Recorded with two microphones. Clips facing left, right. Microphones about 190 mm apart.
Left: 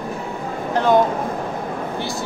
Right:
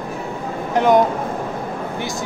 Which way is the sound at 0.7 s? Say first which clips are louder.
Right 2 dB; 20° right (ahead or behind).